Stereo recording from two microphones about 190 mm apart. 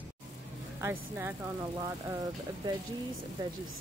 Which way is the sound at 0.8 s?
10° right (ahead or behind).